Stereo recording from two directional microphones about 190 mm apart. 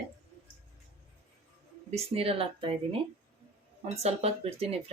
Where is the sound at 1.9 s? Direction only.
30° right (ahead or behind).